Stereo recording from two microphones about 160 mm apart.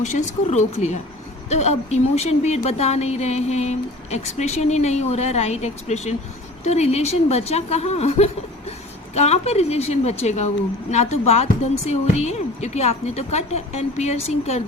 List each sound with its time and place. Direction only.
0.0 s a woman's voice: 45° left (ahead or behind)